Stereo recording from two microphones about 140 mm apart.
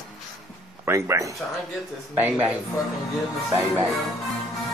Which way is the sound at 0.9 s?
20° right (ahead or behind).